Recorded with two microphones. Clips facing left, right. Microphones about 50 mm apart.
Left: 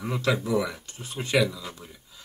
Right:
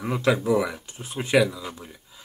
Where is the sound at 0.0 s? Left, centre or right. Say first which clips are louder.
Right 4 dB; centre.